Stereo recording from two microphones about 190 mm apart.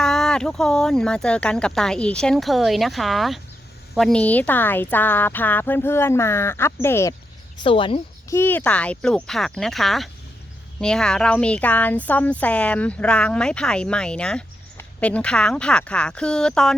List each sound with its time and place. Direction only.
0.0 s speech: 5° left (ahead or behind)
7.6 s speech: 25° left (ahead or behind)
8.3 s speech: 10° left (ahead or behind)